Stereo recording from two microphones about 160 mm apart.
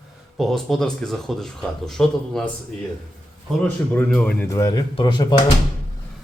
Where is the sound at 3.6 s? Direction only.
10° left (ahead or behind).